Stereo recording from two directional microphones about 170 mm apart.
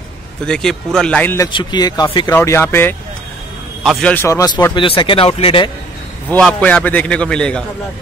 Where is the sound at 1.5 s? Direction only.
25° left (ahead or behind).